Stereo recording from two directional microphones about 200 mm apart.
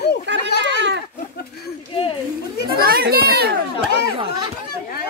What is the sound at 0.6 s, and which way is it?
Goat, 60° right (ahead or behind).